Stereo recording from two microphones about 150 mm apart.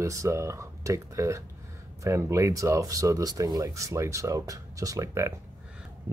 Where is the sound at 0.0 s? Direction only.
20° right (ahead or behind).